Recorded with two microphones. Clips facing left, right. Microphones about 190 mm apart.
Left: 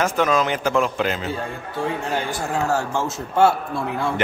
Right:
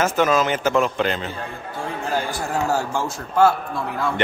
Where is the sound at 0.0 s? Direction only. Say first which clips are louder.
Right 1 dB; 5° right (ahead or behind).